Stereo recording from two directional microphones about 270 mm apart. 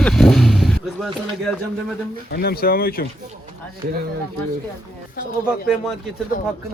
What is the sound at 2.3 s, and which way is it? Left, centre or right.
Speech, left.